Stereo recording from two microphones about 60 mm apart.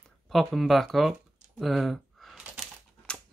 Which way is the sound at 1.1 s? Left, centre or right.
Centre.